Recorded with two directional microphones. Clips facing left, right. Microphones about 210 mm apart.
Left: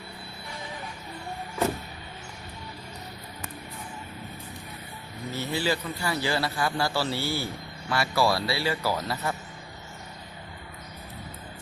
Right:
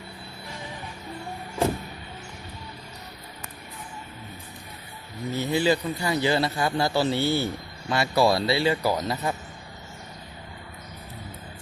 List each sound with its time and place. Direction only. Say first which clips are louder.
5.4 s a man's voice: right 5 dB; 20° right (ahead or behind)